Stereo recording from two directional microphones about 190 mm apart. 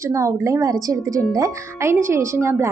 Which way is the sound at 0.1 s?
15° right (ahead or behind).